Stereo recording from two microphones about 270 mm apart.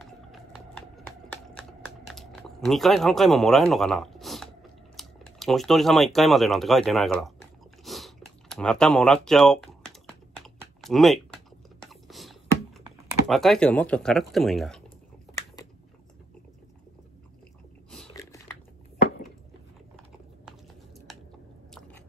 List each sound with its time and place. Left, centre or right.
1.7 s typing: centre
4.9 s speech: centre
7.8 s chewing: centre
10.8 s typing: centre
13.3 s speech: centre